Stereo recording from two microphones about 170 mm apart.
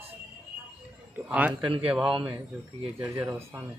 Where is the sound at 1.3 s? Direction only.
10° right (ahead or behind).